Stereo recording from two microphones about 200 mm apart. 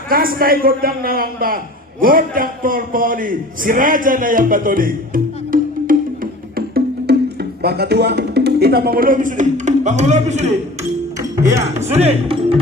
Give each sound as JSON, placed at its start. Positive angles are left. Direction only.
{"t": 0.1, "sound": "a man's voice", "side_deg": -45}
{"t": 6.6, "sound": "music", "side_deg": -50}
{"t": 7.6, "sound": "speech", "side_deg": -55}
{"t": 11.2, "sound": "music", "side_deg": -15}
{"t": 11.8, "sound": "speech", "side_deg": -30}